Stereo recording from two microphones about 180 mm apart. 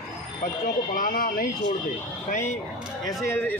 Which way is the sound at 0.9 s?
50° left (ahead or behind).